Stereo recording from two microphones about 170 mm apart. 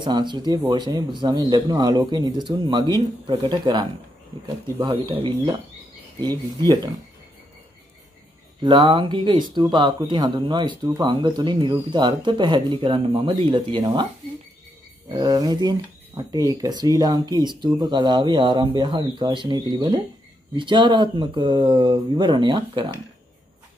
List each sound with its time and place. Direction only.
0.0 s speech: 25° right (ahead or behind)
8.5 s speech: 25° right (ahead or behind)
15.0 s speech: 20° right (ahead or behind)